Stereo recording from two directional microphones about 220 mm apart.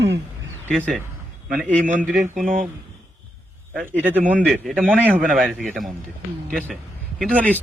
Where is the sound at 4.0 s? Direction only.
5° right (ahead or behind).